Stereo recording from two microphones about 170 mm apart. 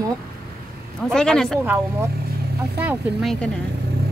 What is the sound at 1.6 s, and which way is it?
Speech, 10° right (ahead or behind).